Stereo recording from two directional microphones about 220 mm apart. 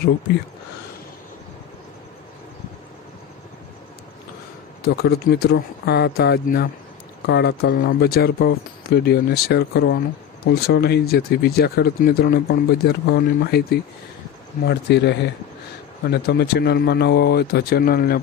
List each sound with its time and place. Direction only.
4.8 s speech: 45° left (ahead or behind)